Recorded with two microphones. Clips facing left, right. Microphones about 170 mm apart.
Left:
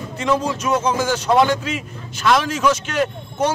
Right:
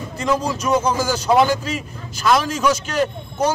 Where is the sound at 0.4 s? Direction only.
35° right (ahead or behind).